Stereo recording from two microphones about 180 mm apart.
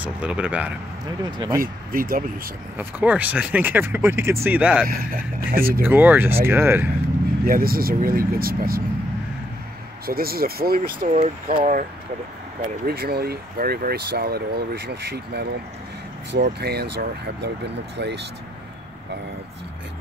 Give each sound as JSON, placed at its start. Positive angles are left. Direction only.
{"t": 0.0, "sound": "speech", "side_deg": -5}
{"t": 1.2, "sound": "speech", "side_deg": -25}
{"t": 1.6, "sound": "speech", "side_deg": -50}
{"t": 2.8, "sound": "speech", "side_deg": -10}
{"t": 4.8, "sound": "speech", "side_deg": -55}
{"t": 5.9, "sound": "speech", "side_deg": -10}
{"t": 7.4, "sound": "speech", "side_deg": -55}
{"t": 10.0, "sound": "speech", "side_deg": -55}
{"t": 11.1, "sound": "speech", "side_deg": -40}
{"t": 12.8, "sound": "speech", "side_deg": -60}